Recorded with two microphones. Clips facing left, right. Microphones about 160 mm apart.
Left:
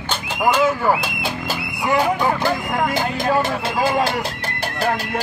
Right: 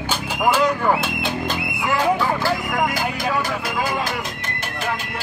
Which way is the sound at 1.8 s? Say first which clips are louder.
Left 2 dB; 20° left (ahead or behind).